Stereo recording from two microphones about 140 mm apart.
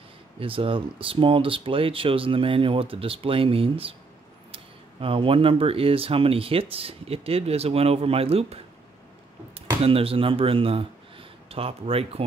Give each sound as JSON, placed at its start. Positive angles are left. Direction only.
{"t": 0.4, "sound": "speech", "side_deg": -40}
{"t": 5.0, "sound": "speech", "side_deg": -40}
{"t": 9.8, "sound": "speech", "side_deg": -40}